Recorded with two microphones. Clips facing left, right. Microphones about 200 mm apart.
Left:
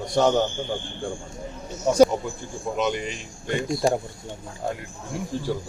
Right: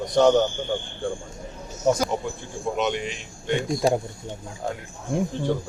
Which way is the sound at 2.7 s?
Centre (ahead or behind).